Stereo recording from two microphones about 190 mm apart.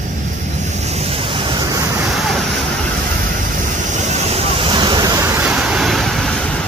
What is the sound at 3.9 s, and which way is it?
Vehicle, 30° right (ahead or behind).